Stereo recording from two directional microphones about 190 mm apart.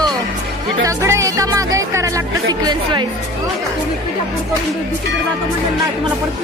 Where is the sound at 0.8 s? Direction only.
15° right (ahead or behind).